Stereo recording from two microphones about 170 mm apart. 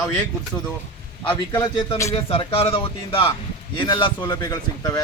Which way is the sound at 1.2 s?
30° left (ahead or behind).